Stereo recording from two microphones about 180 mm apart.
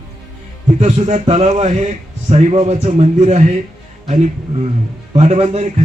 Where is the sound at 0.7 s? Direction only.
40° right (ahead or behind).